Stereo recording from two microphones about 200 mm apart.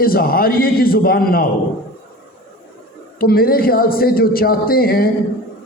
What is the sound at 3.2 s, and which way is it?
A man's voice, 50° left (ahead or behind).